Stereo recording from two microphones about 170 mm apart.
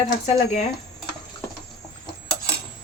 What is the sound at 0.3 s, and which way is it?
Speech, 40° left (ahead or behind).